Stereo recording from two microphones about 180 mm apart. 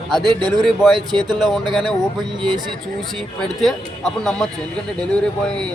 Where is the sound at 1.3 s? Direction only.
Centre (ahead or behind).